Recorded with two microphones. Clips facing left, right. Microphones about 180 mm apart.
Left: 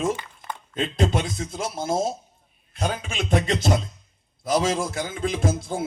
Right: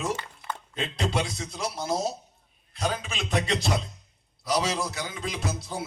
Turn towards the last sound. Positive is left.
turn(degrees=50)  # may be behind; listen again after turning